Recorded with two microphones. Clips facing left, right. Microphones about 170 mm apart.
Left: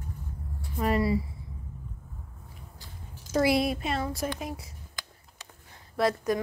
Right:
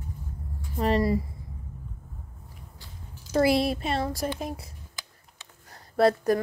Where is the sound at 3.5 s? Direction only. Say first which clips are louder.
Right 2 dB; 30° right (ahead or behind).